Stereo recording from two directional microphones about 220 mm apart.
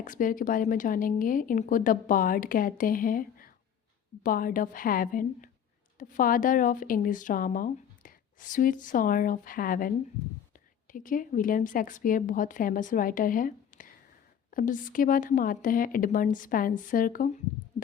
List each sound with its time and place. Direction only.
0.0 s speech: 35° left (ahead or behind)